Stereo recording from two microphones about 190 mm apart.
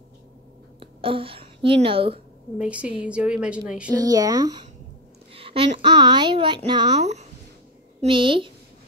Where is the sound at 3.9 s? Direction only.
20° right (ahead or behind).